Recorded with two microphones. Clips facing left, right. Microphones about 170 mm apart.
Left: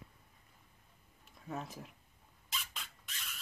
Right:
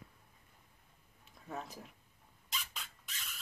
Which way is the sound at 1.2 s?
Centre (ahead or behind).